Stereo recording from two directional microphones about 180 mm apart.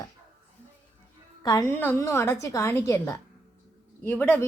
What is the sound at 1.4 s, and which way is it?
A woman's voice, 15° left (ahead or behind).